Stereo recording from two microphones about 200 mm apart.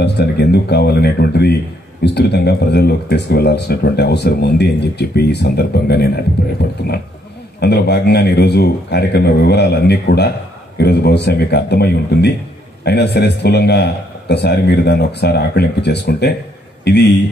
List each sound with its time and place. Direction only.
0.0 s speech: 55° left (ahead or behind)